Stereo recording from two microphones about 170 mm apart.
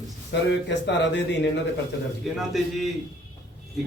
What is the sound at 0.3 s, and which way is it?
Speech, 90° left.